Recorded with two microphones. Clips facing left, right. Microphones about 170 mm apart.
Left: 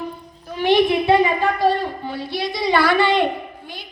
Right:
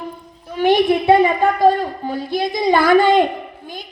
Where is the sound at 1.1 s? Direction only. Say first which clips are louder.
Right 4 dB; 50° right (ahead or behind).